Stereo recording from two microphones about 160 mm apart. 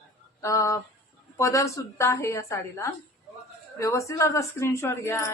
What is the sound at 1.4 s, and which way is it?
Speech, 20° left (ahead or behind).